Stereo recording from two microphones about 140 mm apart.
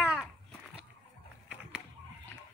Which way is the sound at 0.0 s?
5° right (ahead or behind).